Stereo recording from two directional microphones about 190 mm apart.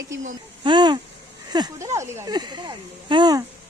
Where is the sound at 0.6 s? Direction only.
25° right (ahead or behind).